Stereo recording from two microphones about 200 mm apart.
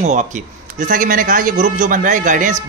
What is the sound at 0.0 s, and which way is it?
Speech, 35° right (ahead or behind).